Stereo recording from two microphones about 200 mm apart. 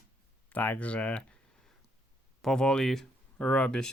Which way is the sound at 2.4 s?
5° left (ahead or behind).